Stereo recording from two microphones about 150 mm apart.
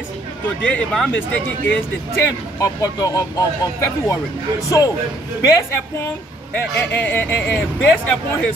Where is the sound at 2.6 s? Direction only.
20° left (ahead or behind).